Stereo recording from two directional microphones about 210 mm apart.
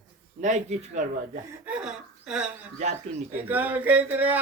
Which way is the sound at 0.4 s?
35° right (ahead or behind).